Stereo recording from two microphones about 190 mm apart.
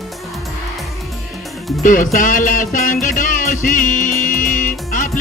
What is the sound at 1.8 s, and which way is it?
Music, 45° left (ahead or behind).